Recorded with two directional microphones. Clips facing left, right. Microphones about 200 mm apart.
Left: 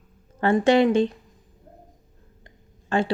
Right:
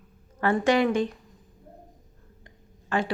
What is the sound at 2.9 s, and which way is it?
Speech, 25° left (ahead or behind).